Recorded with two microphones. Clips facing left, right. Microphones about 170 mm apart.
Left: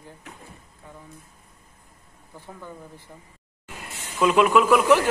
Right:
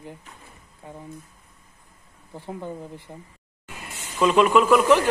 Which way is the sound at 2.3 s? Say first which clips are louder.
Right 7 dB; 20° right (ahead or behind).